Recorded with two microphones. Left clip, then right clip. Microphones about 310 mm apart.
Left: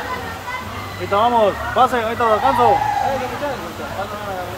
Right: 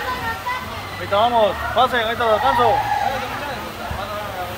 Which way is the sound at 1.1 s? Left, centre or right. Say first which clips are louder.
Left 1 dB; left.